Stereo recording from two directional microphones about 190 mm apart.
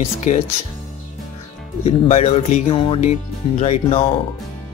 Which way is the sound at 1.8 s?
35° left (ahead or behind).